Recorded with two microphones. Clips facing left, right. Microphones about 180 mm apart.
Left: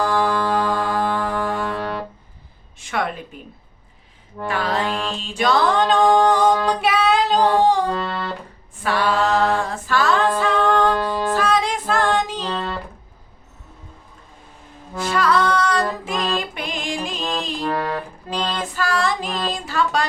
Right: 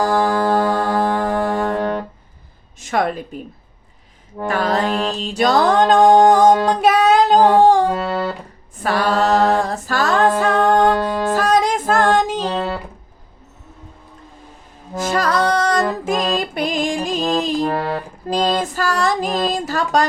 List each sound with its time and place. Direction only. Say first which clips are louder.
0.0 s music: right 3 dB; 45° right (ahead or behind)
4.4 s music: right 4 dB; 45° right (ahead or behind)
8.8 s a capella: right 2 dB; 40° right (ahead or behind)
14.9 s music: right 1 dB; 40° right (ahead or behind)